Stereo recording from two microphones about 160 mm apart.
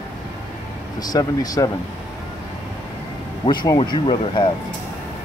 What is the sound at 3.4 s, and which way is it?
Speech, 25° left (ahead or behind).